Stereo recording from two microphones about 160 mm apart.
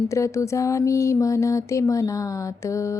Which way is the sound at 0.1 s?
20° left (ahead or behind).